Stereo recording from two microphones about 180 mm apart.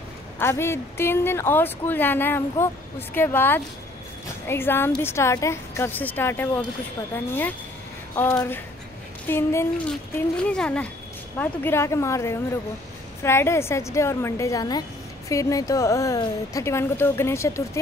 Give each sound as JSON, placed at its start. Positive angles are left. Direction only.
{"t": 0.4, "sound": "a woman's voice", "side_deg": 15}
{"t": 8.2, "sound": "a woman's voice", "side_deg": 10}